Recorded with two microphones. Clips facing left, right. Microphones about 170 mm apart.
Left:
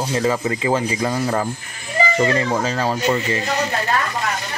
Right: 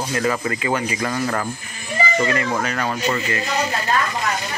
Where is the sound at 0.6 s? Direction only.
25° left (ahead or behind).